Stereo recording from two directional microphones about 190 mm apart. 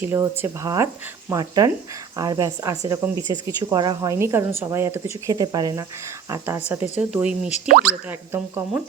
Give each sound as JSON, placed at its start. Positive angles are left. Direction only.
{"t": 0.0, "sound": "a woman's voice", "side_deg": -10}